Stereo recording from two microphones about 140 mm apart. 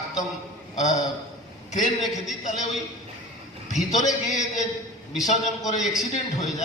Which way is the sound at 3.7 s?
60° left (ahead or behind).